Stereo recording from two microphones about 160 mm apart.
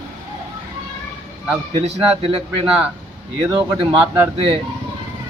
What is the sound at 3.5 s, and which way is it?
Speech, 15° right (ahead or behind).